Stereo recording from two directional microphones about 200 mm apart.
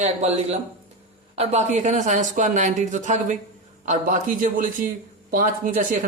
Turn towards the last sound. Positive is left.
turn(degrees=-40)  # may be behind; listen again after turning